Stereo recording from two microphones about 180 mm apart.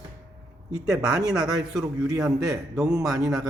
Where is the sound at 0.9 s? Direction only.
5° right (ahead or behind).